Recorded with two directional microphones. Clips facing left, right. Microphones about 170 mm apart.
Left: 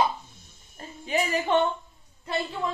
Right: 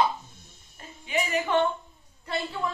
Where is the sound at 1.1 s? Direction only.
40° left (ahead or behind).